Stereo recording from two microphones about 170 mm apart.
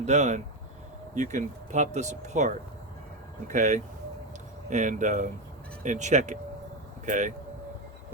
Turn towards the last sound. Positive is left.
turn(degrees=-45)  # may be behind; listen again after turning